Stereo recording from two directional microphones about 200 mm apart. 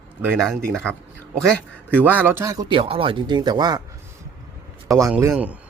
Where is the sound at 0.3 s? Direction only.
Centre (ahead or behind).